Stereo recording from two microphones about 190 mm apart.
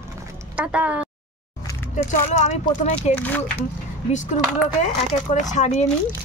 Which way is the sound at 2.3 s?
35° left (ahead or behind).